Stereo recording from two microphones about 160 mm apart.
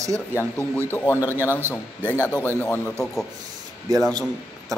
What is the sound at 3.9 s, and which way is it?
Speech, 25° right (ahead or behind).